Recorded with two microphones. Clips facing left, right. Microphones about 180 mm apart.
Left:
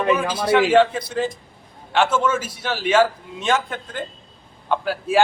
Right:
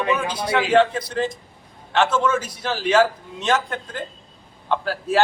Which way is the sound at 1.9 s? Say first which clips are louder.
Even; 10° left (ahead or behind).